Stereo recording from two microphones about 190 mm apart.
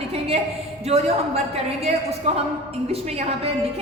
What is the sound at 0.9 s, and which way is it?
A woman's voice, 35° right (ahead or behind).